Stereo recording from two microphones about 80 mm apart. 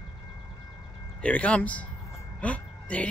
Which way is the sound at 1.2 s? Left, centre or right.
Centre.